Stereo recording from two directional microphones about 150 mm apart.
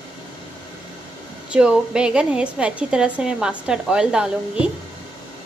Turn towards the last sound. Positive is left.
turn(degrees=-5)  # may be behind; listen again after turning